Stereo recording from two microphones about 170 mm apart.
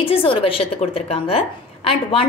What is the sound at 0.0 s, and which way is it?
A woman's voice, 30° left (ahead or behind).